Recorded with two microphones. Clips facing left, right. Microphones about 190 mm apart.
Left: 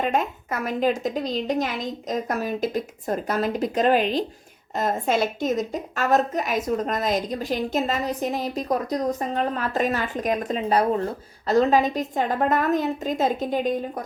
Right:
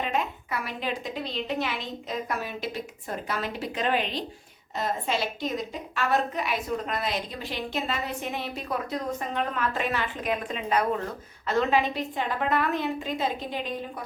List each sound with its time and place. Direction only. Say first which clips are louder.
0.0 s a woman's voice: left 5 dB; 45° left (ahead or behind)